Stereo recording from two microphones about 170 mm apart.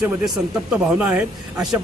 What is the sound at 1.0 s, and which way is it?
Speech, 10° right (ahead or behind).